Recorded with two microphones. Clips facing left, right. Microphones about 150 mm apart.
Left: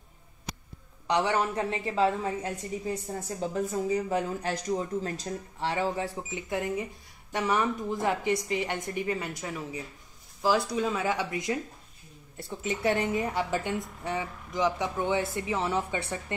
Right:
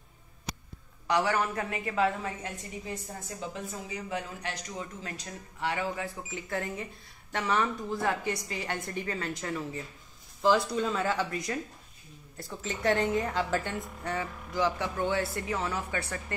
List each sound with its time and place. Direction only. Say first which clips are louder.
1.0 s a woman's voice: left 1 dB; 20° left (ahead or behind)
6.3 s speech: left 4 dB; 15° left (ahead or behind)